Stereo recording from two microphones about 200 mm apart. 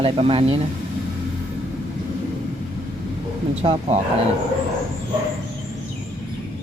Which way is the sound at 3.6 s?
25° right (ahead or behind).